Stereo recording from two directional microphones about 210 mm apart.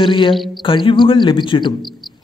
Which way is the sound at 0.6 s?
25° left (ahead or behind).